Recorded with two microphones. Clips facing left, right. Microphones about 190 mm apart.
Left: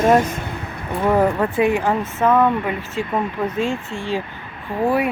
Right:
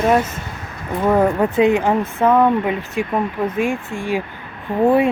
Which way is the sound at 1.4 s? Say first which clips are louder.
Right 3 dB; 20° right (ahead or behind).